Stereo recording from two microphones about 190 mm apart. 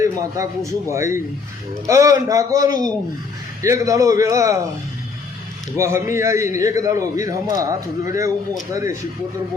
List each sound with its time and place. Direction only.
0.0 s a man's voice: 15° right (ahead or behind)
5.7 s a man's voice: 15° right (ahead or behind)